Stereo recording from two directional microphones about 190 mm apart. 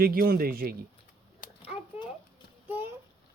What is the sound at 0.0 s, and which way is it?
Speech, 50° right (ahead or behind).